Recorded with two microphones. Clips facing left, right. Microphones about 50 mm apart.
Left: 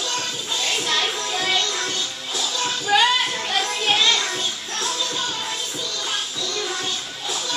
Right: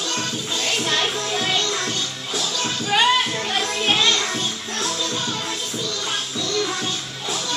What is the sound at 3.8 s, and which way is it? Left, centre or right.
Music, centre.